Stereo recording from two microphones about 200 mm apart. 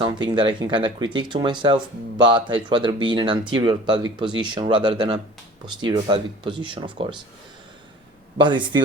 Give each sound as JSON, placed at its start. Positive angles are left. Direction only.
{"t": 0.0, "sound": "speech", "side_deg": -25}
{"t": 8.4, "sound": "speech", "side_deg": -25}